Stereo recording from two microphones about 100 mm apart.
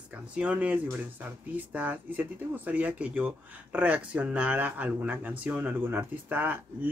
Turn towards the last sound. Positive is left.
turn(degrees=-20)  # may be behind; listen again after turning